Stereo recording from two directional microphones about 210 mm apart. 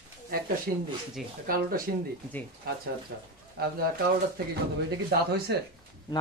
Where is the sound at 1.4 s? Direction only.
40° right (ahead or behind).